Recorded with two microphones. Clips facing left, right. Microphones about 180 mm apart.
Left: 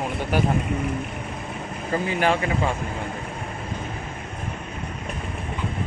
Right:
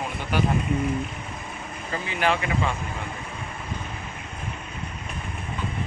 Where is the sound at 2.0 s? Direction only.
45° left (ahead or behind).